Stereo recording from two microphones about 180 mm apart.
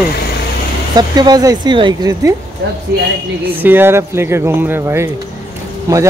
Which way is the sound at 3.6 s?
10° right (ahead or behind).